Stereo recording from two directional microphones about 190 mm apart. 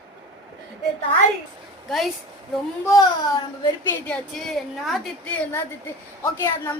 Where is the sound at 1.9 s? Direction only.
Centre (ahead or behind).